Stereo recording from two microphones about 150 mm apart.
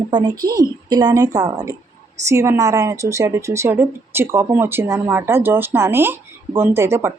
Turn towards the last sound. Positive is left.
turn(degrees=-15)  # may be behind; listen again after turning